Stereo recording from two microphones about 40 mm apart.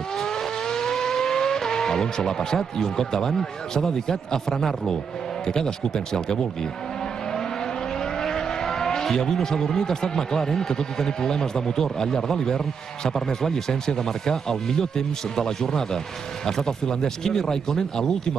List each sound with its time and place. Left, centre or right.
0.2 s vehicle: centre
5.5 s speech: centre
8.0 s speech: centre